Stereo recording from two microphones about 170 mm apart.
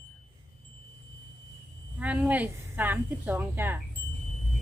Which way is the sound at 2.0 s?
10° right (ahead or behind).